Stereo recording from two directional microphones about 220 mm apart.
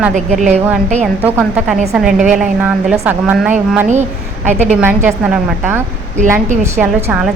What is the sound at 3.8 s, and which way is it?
Speech, 30° right (ahead or behind).